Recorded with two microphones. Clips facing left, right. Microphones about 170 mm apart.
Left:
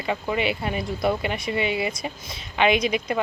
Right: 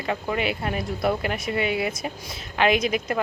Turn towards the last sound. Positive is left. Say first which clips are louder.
# even
turn(degrees=0)  # may be behind; listen again after turning